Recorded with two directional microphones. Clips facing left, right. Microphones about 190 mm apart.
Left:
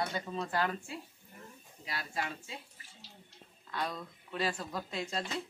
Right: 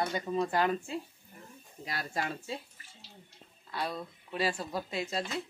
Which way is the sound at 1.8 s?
45° right (ahead or behind).